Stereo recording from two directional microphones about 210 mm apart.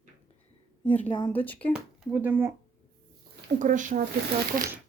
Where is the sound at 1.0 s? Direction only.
25° left (ahead or behind).